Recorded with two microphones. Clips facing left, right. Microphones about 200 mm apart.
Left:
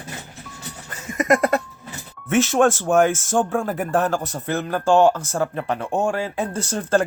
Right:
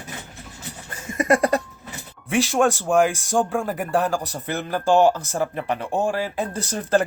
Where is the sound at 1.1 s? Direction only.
30° right (ahead or behind).